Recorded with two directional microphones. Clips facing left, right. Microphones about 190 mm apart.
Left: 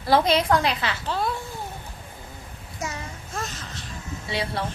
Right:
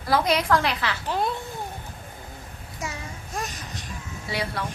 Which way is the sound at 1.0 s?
20° right (ahead or behind).